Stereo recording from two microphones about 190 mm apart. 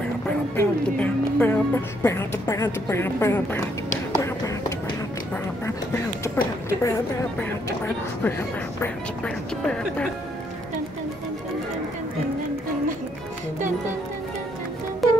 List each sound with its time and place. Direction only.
0.6 s music: 10° left (ahead or behind)
2.0 s speech: 15° left (ahead or behind)
4.1 s music: 15° left (ahead or behind)
6.2 s speech: 15° left (ahead or behind)
15.0 s music: centre (ahead or behind)